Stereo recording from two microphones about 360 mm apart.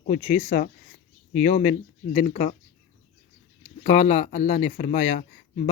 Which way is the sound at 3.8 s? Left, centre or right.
Centre.